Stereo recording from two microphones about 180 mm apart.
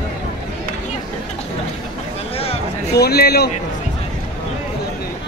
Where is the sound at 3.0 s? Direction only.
65° left (ahead or behind).